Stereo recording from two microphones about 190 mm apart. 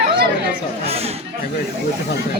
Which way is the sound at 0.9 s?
30° right (ahead or behind).